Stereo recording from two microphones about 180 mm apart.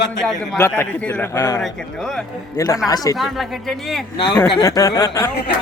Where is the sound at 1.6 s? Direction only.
Centre (ahead or behind).